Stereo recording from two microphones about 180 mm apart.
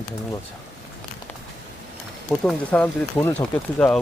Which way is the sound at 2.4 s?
5° left (ahead or behind).